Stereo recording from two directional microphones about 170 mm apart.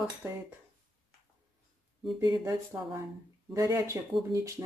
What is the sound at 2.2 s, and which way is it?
Speech, 20° right (ahead or behind).